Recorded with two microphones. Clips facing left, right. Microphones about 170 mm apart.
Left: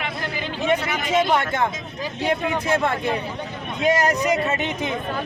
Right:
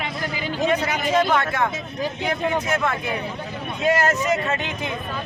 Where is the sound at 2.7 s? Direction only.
30° left (ahead or behind).